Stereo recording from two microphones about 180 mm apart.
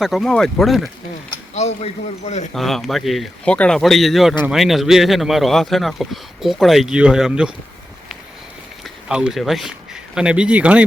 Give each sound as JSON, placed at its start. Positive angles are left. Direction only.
{"t": 0.0, "sound": "speech", "side_deg": 0}
{"t": 1.5, "sound": "a man's voice", "side_deg": 35}
{"t": 2.5, "sound": "speech", "side_deg": 0}
{"t": 8.8, "sound": "speech", "side_deg": -5}